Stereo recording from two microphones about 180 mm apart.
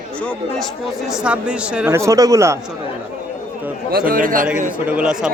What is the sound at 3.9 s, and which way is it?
Speech, 55° right (ahead or behind).